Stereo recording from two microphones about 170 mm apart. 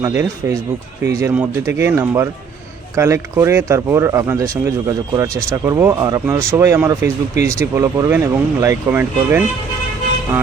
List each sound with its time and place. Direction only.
0.0 s speech: 15° right (ahead or behind)